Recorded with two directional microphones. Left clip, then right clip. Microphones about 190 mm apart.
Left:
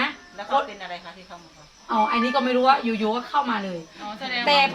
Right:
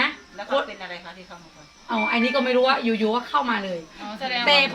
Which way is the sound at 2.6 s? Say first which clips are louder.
Left 1 dB; 5° left (ahead or behind).